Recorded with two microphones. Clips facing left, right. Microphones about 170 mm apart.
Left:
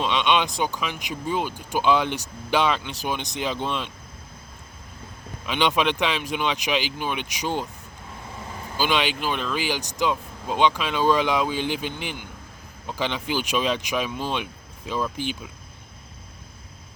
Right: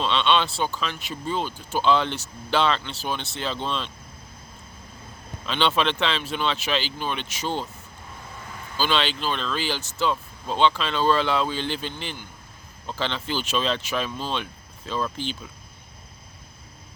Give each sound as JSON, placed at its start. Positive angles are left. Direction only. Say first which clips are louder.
{"t": 0.0, "sound": "speech", "louder": "even", "side_deg": 15}
{"t": 5.5, "sound": "speech", "louder": "left 1 dB", "side_deg": 15}
{"t": 8.8, "sound": "speech", "louder": "left 1 dB", "side_deg": 15}